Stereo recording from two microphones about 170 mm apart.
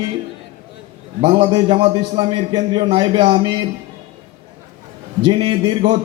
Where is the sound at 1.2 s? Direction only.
30° right (ahead or behind).